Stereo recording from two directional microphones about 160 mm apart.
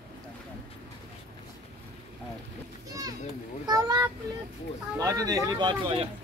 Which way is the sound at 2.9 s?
20° right (ahead or behind).